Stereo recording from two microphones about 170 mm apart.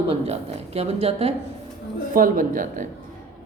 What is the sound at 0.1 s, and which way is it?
A woman's voice, 40° right (ahead or behind).